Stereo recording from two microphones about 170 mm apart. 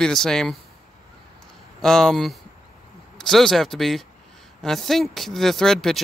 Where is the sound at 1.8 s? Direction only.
5° left (ahead or behind).